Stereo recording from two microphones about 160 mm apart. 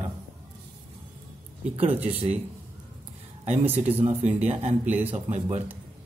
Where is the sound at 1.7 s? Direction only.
35° right (ahead or behind).